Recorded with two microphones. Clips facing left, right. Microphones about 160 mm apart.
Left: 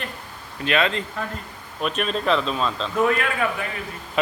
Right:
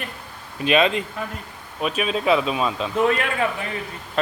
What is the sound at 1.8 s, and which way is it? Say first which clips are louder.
Speech: right 1 dB; 5° right (ahead or behind).